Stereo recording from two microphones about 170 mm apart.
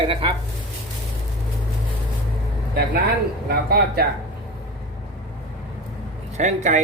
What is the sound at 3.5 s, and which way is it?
Speech, 65° right (ahead or behind).